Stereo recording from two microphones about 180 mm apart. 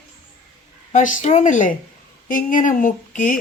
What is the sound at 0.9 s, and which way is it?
Speech, 45° left (ahead or behind).